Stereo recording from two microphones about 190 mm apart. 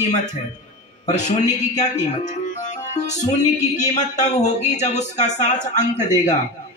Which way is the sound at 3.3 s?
40° left (ahead or behind).